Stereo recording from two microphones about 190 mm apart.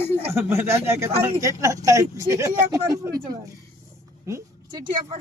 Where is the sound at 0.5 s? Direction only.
15° right (ahead or behind).